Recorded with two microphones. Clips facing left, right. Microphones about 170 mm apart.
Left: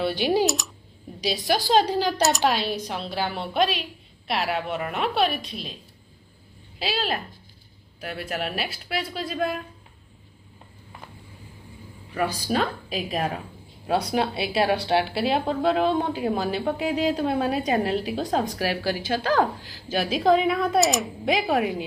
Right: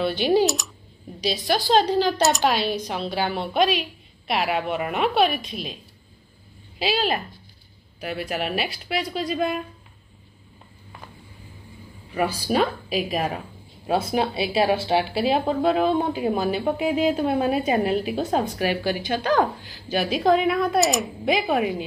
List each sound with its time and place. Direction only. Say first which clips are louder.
0.0 s a woman's voice: right 2 dB; 10° left (ahead or behind)
1.7 s a woman's voice: right 2 dB; 10° left (ahead or behind); by 5.3 s 5° right (ahead or behind)
5.3 s a woman's voice: right 2 dB; 50° right (ahead or behind)
6.8 s speech: right 4 dB; centre (ahead or behind)
12.1 s speech: right 2 dB; 10° right (ahead or behind)